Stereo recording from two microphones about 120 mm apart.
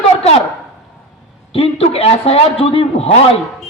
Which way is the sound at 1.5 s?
55° left (ahead or behind).